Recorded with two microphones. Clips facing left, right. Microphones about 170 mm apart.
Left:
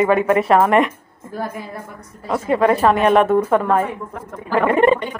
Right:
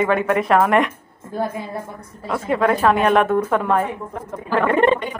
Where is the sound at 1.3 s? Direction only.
25° right (ahead or behind).